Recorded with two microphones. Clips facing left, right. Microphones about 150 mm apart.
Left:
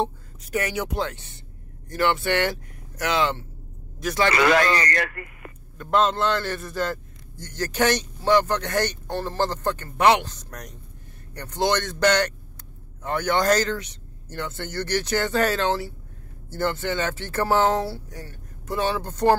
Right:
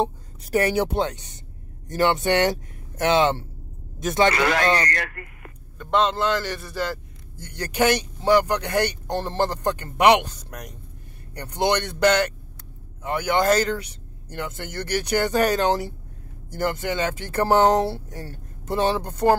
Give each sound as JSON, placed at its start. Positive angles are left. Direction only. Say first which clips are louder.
{"t": 0.4, "sound": "speech", "louder": "right 6 dB", "side_deg": -35}
{"t": 4.9, "sound": "speech", "louder": "left 4 dB", "side_deg": 90}
{"t": 5.8, "sound": "a man's voice", "louder": "even", "side_deg": 0}